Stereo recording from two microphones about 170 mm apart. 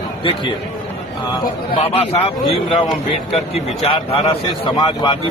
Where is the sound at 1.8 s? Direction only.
35° left (ahead or behind).